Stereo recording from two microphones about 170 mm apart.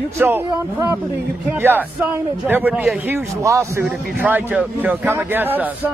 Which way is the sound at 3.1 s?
15° right (ahead or behind).